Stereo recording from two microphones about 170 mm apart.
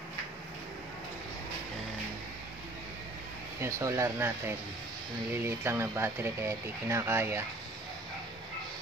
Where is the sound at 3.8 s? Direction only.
15° right (ahead or behind).